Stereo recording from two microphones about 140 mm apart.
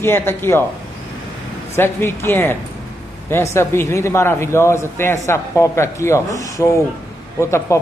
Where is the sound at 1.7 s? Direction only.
15° left (ahead or behind).